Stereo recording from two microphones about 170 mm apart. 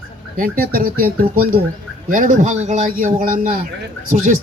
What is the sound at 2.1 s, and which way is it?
Speech, 50° right (ahead or behind).